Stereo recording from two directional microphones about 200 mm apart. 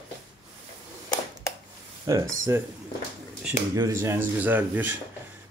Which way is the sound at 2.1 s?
20° right (ahead or behind).